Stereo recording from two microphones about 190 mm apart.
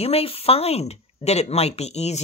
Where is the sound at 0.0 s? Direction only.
30° left (ahead or behind).